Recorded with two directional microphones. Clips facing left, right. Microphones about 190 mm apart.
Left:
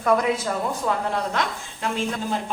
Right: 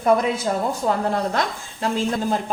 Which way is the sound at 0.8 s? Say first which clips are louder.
Right 4 dB; 40° right (ahead or behind).